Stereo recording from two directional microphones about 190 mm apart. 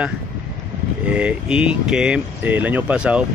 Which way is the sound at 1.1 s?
5° right (ahead or behind).